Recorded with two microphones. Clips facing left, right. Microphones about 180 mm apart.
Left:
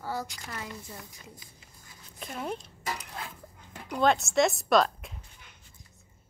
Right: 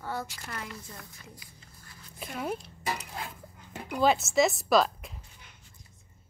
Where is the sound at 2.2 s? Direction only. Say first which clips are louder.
Right 1 dB; 5° right (ahead or behind).